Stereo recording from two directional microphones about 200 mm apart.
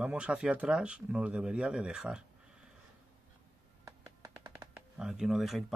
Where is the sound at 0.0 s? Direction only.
5° right (ahead or behind).